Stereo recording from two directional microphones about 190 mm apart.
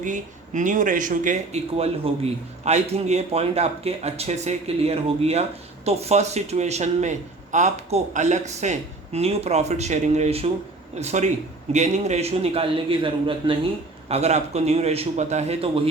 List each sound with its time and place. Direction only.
0.0 s speech: 40° right (ahead or behind)